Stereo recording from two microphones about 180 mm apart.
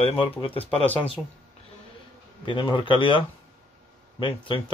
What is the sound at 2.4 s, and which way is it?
Speech, 25° left (ahead or behind).